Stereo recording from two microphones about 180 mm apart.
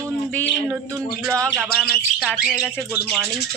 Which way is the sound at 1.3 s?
15° right (ahead or behind).